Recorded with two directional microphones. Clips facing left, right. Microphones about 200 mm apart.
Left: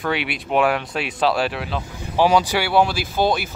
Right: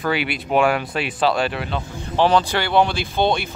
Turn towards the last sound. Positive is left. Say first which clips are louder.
# even
turn(degrees=5)  # may be behind; listen again after turning